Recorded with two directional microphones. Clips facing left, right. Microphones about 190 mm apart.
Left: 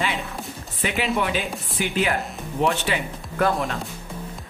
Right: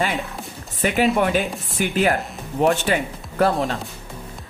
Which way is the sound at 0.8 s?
45° right (ahead or behind).